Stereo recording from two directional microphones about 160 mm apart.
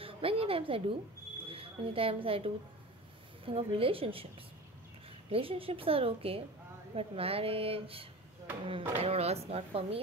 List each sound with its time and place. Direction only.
0.0 s a woman's voice: 35° right (ahead or behind)